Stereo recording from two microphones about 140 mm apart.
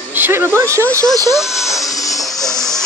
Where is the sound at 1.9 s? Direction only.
25° left (ahead or behind).